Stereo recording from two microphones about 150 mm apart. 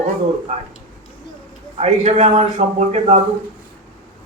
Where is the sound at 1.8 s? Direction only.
45° right (ahead or behind).